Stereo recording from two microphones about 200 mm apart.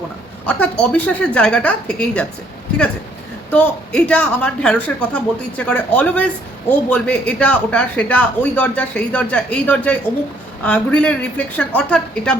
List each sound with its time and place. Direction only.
0.4 s speech: 5° left (ahead or behind)
3.5 s speech: 5° left (ahead or behind)